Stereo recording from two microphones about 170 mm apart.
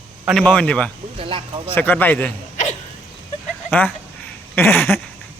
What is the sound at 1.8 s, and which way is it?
Speech, 10° left (ahead or behind).